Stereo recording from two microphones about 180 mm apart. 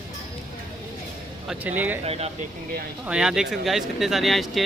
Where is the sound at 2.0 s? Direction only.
35° right (ahead or behind).